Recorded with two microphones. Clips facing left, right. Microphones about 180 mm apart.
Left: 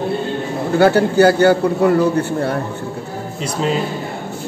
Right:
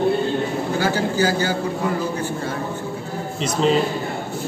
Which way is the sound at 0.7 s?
65° left (ahead or behind).